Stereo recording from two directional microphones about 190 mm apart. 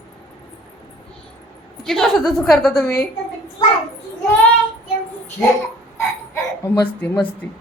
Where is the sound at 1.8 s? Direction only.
Centre (ahead or behind).